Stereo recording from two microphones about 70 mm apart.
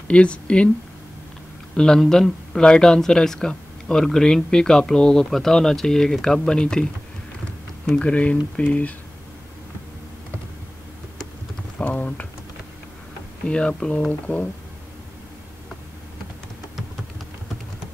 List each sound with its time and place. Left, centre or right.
0.1 s speech: centre
1.8 s speech: centre
7.9 s speech: centre
11.8 s speech: left
13.5 s speech: centre